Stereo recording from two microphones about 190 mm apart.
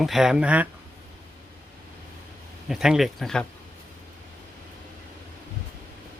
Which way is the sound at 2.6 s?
5° right (ahead or behind).